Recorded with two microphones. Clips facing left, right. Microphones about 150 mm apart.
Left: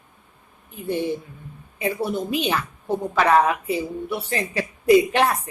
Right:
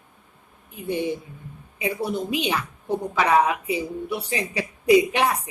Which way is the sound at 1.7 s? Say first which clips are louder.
Left 2 dB; 15° right (ahead or behind).